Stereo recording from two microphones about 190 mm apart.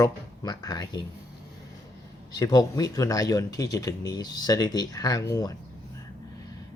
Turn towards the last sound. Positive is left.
turn(degrees=15)  # may be behind; listen again after turning